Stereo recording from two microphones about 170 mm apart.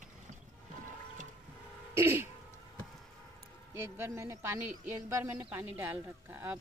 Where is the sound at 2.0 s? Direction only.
15° right (ahead or behind).